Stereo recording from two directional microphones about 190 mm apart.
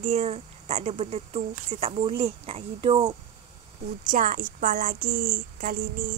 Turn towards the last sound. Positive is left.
turn(degrees=-50)  # may be behind; listen again after turning